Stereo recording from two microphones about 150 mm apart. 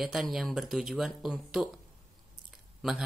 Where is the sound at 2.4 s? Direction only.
5° right (ahead or behind).